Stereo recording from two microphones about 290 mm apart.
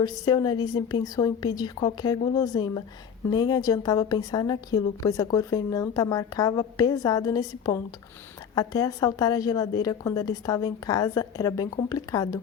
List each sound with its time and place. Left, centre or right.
0.0 s a woman's voice: centre